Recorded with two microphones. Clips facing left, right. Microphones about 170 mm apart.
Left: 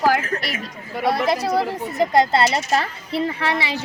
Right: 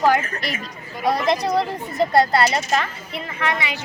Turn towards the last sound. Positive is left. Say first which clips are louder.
# left 2 dB
turn(degrees=35)  # may be behind; listen again after turning